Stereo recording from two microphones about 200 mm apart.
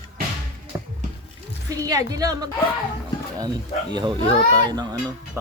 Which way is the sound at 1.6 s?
15° right (ahead or behind).